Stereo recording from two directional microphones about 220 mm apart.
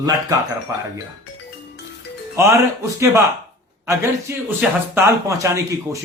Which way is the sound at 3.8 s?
10° right (ahead or behind).